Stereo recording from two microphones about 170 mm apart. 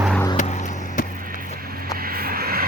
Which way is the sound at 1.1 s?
55° right (ahead or behind).